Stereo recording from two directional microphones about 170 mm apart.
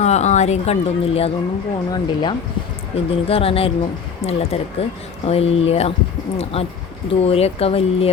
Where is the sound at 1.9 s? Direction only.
25° left (ahead or behind).